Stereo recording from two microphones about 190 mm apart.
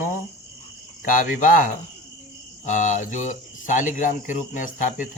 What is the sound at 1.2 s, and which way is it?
Speech, 45° left (ahead or behind).